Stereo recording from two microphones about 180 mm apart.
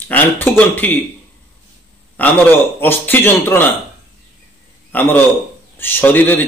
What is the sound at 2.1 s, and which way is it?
Speech, 10° left (ahead or behind).